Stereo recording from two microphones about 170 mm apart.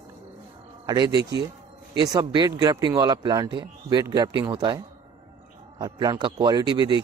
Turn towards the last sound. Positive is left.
turn(degrees=-25)  # may be behind; listen again after turning